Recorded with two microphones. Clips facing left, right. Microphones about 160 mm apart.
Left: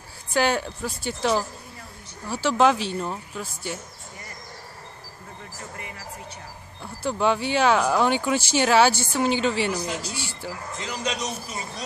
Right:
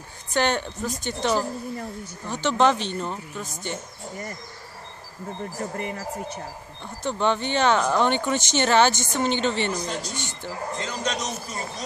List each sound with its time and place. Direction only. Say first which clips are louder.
0.3 s speech: left 1 dB; 5° left (ahead or behind)
2.2 s speech: left 1 dB; 5° left (ahead or behind)
5.6 s speech: right 8 dB; 45° right (ahead or behind)
6.8 s a man's voice: left 1 dB; 5° left (ahead or behind)